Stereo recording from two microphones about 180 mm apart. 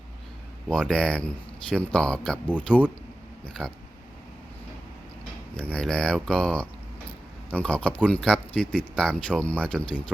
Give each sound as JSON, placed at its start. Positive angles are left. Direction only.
{"t": 0.7, "sound": "speech", "side_deg": 5}
{"t": 5.5, "sound": "speech", "side_deg": 5}